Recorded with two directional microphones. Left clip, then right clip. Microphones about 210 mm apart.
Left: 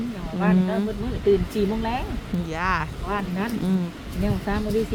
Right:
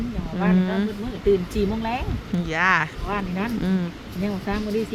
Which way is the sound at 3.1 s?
40° right (ahead or behind).